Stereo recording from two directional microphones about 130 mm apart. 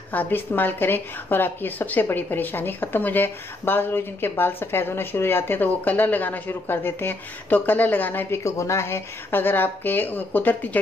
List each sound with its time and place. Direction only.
0.1 s speech: 15° left (ahead or behind)